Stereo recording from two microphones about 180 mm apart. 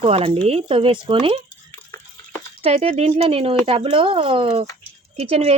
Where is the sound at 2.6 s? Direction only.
35° right (ahead or behind).